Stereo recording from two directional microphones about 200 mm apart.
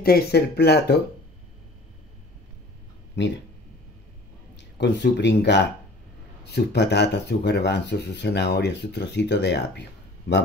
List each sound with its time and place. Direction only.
0.0 s speech: 50° left (ahead or behind)
4.7 s speech: 60° left (ahead or behind)